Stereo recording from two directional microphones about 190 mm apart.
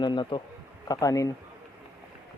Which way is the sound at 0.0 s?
25° left (ahead or behind).